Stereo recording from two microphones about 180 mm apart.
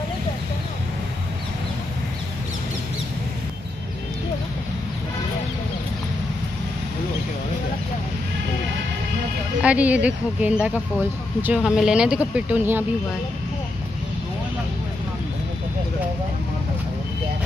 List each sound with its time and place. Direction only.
9.6 s speech: 5° right (ahead or behind)